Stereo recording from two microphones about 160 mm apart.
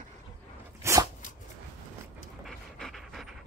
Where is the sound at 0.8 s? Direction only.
20° right (ahead or behind).